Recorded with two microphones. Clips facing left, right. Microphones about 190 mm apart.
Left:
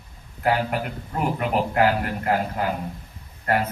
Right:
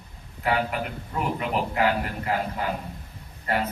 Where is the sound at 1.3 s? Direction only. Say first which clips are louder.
Left 6 dB; 50° left (ahead or behind).